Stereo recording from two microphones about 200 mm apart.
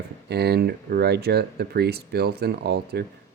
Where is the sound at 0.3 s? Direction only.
55° right (ahead or behind).